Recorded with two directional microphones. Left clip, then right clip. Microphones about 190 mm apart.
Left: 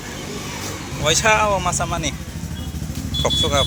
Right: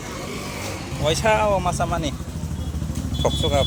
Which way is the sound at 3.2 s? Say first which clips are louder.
Left 3 dB; 25° right (ahead or behind).